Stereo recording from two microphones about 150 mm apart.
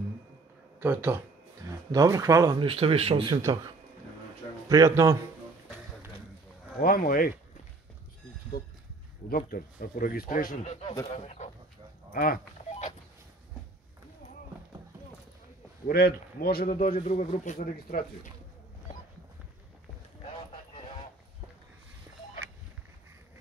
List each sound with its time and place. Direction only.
0.7 s speech: 15° right (ahead or behind)
2.6 s speech: 40° right (ahead or behind)
3.3 s speech: 30° right (ahead or behind)
6.8 s speech: 70° left (ahead or behind)
8.5 s speech: 75° left (ahead or behind); by 11.5 s 50° left (ahead or behind)
12.1 s speech: 75° left (ahead or behind)
15.9 s speech: 90° left
16.7 s speech: 60° left (ahead or behind)
17.6 s speech: 75° left (ahead or behind)